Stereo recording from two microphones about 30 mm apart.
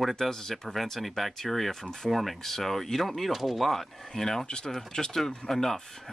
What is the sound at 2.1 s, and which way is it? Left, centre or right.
Speech, centre.